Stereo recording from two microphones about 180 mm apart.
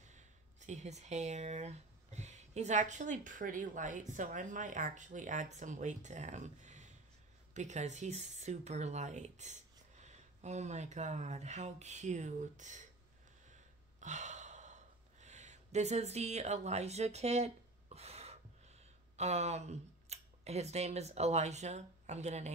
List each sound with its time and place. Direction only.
0.0 s speech: 40° right (ahead or behind)
13.5 s gasp: 40° right (ahead or behind)
19.1 s speech: 35° right (ahead or behind)